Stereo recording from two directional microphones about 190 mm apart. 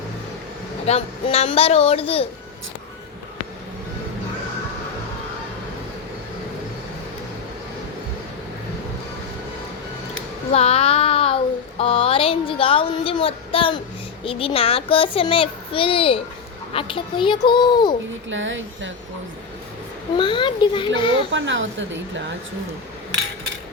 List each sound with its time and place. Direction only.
0.9 s speech: 30° left (ahead or behind)
10.5 s child singing: 30° left (ahead or behind)
11.8 s a child's voice: 30° left (ahead or behind)
18.3 s speech: 80° right
20.1 s a child's voice: 25° left (ahead or behind)
21.2 s a woman's voice: 75° right (ahead or behind)